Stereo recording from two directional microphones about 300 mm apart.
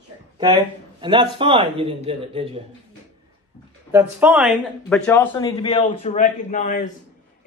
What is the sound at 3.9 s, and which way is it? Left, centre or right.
Speech, centre.